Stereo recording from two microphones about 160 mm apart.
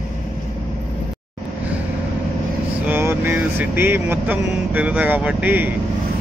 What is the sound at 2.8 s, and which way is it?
Speech, 15° right (ahead or behind).